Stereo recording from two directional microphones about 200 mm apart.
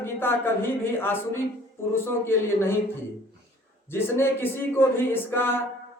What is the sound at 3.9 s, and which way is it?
A man's voice, 10° left (ahead or behind).